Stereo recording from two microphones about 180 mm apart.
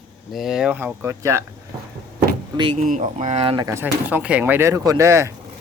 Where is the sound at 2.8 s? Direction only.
40° right (ahead or behind).